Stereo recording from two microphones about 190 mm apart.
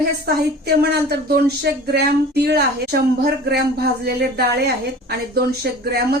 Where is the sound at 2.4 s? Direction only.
60° right (ahead or behind).